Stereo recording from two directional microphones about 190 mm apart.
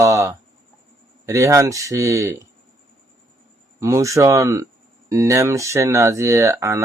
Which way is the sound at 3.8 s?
15° right (ahead or behind).